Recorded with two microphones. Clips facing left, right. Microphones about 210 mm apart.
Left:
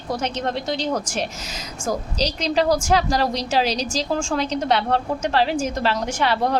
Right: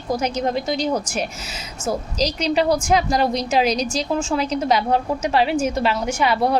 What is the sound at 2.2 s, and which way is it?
Speech, 35° left (ahead or behind).